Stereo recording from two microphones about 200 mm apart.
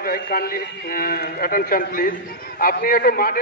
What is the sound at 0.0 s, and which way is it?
A man's voice, 50° left (ahead or behind).